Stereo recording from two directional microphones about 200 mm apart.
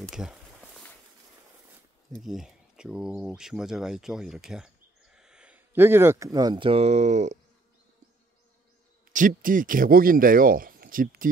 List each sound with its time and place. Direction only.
0.0 s a sound: 5° right (ahead or behind)
2.1 s speech: centre (ahead or behind); by 7.3 s 35° right (ahead or behind)
9.1 s speech: 40° right (ahead or behind)